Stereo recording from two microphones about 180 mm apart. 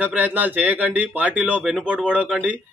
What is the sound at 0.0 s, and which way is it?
A man's voice, 10° right (ahead or behind).